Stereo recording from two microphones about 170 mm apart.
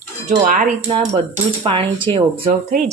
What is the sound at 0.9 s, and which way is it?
Speech, 30° right (ahead or behind).